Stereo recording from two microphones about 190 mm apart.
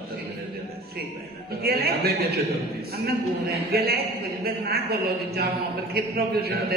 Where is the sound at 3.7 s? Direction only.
55° right (ahead or behind).